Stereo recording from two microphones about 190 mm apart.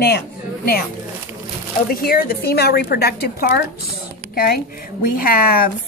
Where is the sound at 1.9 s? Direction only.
50° left (ahead or behind).